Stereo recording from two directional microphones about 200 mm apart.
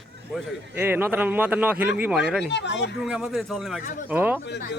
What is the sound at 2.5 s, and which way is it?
Speech, 60° left (ahead or behind).